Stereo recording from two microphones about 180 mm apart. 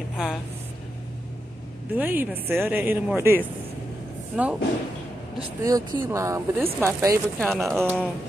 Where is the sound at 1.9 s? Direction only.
10° right (ahead or behind).